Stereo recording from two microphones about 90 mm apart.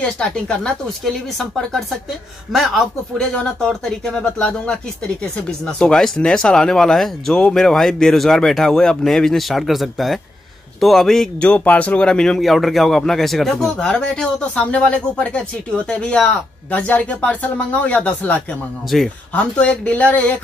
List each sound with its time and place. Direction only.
0.0 s speech: 10° left (ahead or behind)
11.4 s speech: 15° left (ahead or behind)
18.9 s speech: 5° left (ahead or behind)